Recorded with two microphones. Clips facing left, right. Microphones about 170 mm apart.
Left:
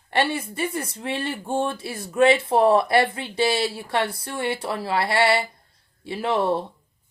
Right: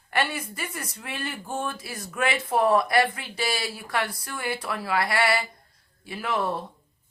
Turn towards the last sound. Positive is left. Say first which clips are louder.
# left 5 dB
turn(degrees=30)  # may be behind; listen again after turning